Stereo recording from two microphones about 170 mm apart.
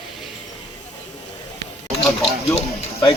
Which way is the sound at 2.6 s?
35° left (ahead or behind).